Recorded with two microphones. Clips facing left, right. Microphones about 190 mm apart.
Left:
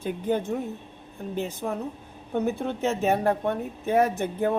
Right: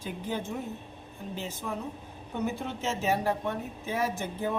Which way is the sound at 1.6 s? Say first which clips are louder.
Left 5 dB; 50° left (ahead or behind).